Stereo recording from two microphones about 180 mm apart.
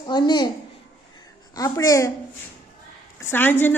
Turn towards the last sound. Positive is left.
turn(degrees=10)  # may be behind; listen again after turning